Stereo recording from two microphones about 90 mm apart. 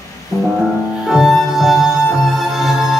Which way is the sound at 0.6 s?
5° right (ahead or behind).